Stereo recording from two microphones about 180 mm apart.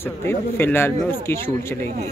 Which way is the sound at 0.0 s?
15° left (ahead or behind).